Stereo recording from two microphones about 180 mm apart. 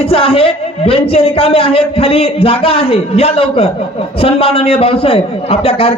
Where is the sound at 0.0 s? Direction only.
30° left (ahead or behind).